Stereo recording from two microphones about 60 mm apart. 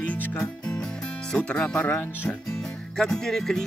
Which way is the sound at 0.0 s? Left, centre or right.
Left.